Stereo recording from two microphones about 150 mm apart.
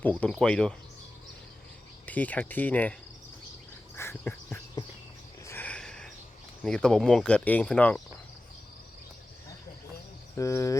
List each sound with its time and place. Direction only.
0.0 s speech: 10° left (ahead or behind)
2.0 s speech: 10° left (ahead or behind)
3.9 s insect: 15° left (ahead or behind)
4.5 s a sound: 25° left (ahead or behind)
5.5 s a sound: 10° left (ahead or behind)
6.7 s speech: 5° left (ahead or behind)
10.3 s speech: 20° left (ahead or behind)